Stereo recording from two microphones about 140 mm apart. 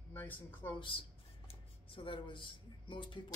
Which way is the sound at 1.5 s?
40° left (ahead or behind).